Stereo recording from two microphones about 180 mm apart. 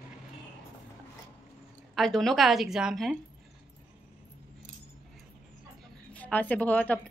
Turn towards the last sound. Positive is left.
turn(degrees=10)  # may be behind; listen again after turning